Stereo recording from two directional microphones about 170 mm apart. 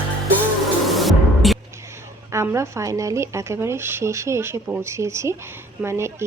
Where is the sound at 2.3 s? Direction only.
15° right (ahead or behind).